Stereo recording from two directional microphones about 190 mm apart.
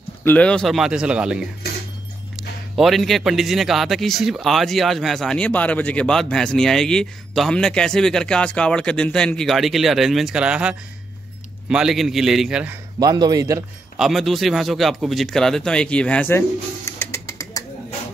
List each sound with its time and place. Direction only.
0.2 s a man's voice: 10° left (ahead or behind)
13.0 s speech: 20° right (ahead or behind)
13.9 s speech: centre (ahead or behind); by 17.6 s 15° left (ahead or behind)